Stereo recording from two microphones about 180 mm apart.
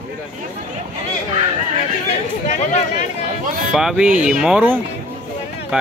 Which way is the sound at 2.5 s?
40° left (ahead or behind).